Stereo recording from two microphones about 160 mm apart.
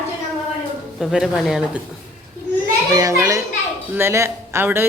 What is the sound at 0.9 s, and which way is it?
Speech, centre (ahead or behind).